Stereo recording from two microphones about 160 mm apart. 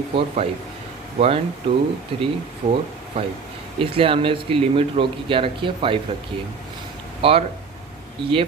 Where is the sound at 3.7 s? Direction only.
35° right (ahead or behind).